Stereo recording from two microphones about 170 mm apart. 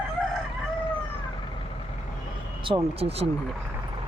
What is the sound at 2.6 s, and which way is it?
Speech, 30° right (ahead or behind).